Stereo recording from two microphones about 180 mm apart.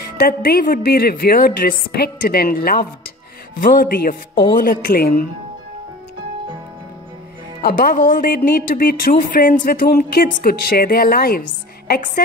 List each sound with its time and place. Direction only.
0.2 s speech: 55° left (ahead or behind)
7.6 s speech: 50° left (ahead or behind)